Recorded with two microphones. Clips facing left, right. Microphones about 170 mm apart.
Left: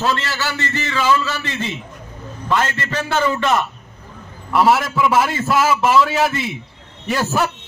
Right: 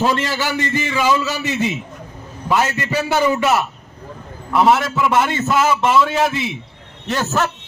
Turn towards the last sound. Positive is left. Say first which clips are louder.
# even
turn(degrees=10)  # may be behind; listen again after turning